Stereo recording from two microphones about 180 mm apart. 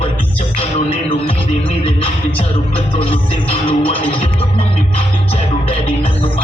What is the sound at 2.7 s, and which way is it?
Music, 30° left (ahead or behind).